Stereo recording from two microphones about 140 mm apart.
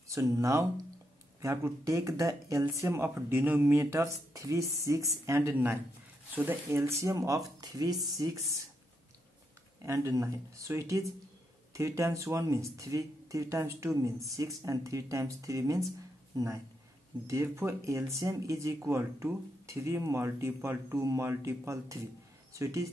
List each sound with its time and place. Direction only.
0.1 s speech: 20° right (ahead or behind)
9.8 s speech: 20° right (ahead or behind)